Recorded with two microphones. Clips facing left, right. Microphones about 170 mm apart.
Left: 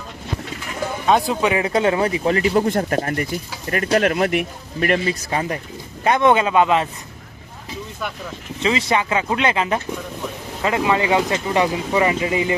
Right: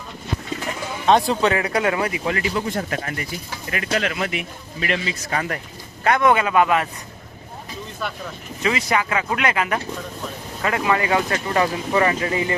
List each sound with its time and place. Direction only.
1.0 s speech: 5° left (ahead or behind)
1.5 s speech: 25° left (ahead or behind); by 5.1 s 50° left (ahead or behind)
5.2 s speech: 25° left (ahead or behind)
8.0 s speech: 15° left (ahead or behind)
8.6 s speech: 25° left (ahead or behind)